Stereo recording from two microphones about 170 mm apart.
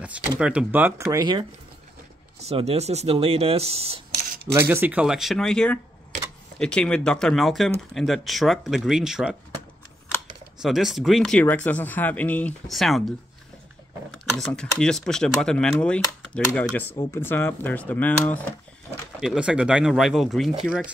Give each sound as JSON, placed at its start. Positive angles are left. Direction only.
{"t": 0.4, "sound": "speech", "side_deg": -5}
{"t": 2.4, "sound": "speech", "side_deg": -35}
{"t": 4.6, "sound": "speech", "side_deg": -10}
{"t": 10.6, "sound": "speech", "side_deg": 0}
{"t": 14.1, "sound": "speech", "side_deg": 5}
{"t": 19.2, "sound": "speech", "side_deg": -5}